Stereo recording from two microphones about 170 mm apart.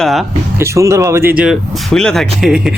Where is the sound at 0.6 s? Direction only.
15° right (ahead or behind).